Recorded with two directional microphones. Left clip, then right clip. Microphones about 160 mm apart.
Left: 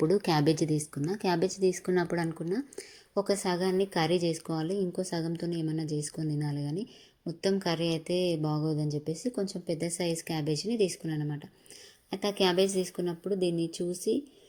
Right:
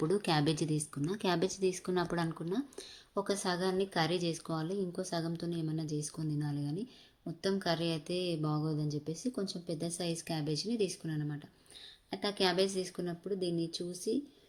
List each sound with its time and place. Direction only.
0.0 s speech: 15° left (ahead or behind)
8.1 s mantra: 30° right (ahead or behind)
8.4 s speech: 20° left (ahead or behind)